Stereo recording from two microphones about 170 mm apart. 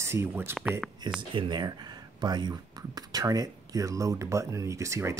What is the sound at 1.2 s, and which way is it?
Speech, 25° right (ahead or behind).